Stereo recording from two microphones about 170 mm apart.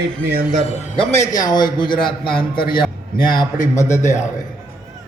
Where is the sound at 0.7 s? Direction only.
40° left (ahead or behind).